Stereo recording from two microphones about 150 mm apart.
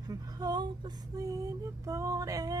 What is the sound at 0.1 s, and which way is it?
Speech, 25° right (ahead or behind).